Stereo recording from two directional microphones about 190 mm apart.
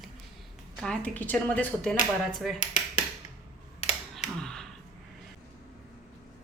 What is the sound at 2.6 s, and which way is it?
Dishes, 40° left (ahead or behind).